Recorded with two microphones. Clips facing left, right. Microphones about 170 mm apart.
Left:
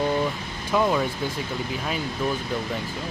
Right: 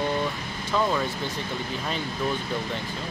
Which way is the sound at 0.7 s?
10° left (ahead or behind).